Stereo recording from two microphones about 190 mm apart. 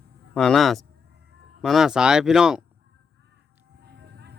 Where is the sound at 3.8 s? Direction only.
60° right (ahead or behind).